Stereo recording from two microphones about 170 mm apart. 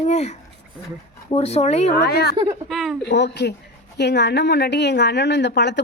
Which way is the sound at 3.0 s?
90° left.